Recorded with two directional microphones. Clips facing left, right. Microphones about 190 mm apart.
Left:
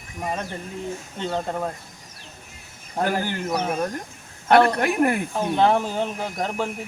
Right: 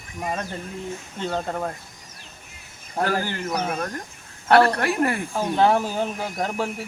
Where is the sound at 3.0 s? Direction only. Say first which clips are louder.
Even; 15° left (ahead or behind).